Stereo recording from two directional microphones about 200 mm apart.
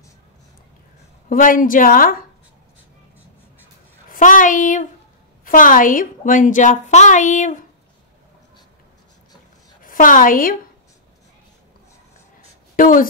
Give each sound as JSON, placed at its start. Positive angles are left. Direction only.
{"t": 1.3, "sound": "a woman's voice", "side_deg": 40}
{"t": 4.1, "sound": "a child's voice", "side_deg": 40}
{"t": 9.8, "sound": "a woman's voice", "side_deg": 40}
{"t": 12.7, "sound": "a woman's voice", "side_deg": 45}